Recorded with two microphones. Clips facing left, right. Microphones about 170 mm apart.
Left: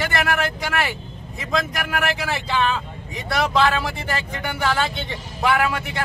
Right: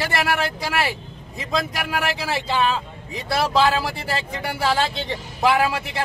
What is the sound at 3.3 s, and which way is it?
Speech, 30° right (ahead or behind).